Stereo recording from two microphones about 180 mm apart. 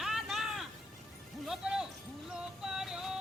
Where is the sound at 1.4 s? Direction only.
5° right (ahead or behind).